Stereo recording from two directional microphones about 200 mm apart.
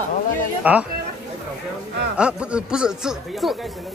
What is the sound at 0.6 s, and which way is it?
Speech, 5° right (ahead or behind).